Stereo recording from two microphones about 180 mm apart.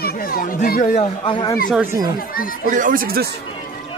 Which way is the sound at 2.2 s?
55° left (ahead or behind).